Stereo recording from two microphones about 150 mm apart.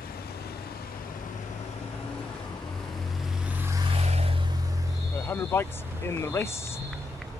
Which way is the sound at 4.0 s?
45° right (ahead or behind).